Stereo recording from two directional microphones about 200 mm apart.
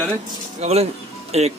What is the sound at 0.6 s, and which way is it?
Speech, 30° right (ahead or behind).